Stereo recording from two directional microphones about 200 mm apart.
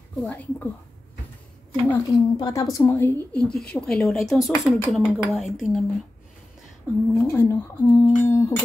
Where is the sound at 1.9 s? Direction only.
15° left (ahead or behind); by 5.5 s centre (ahead or behind).